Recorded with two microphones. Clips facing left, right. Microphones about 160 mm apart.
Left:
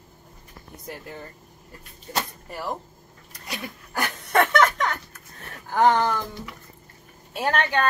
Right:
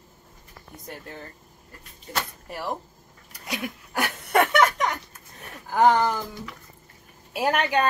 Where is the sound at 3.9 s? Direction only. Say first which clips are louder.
Even; 10° right (ahead or behind).